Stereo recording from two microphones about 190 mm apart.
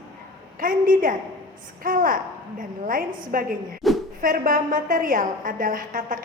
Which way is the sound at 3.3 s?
50° right (ahead or behind).